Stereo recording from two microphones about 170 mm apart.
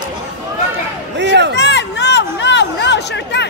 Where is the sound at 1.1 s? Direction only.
90° right.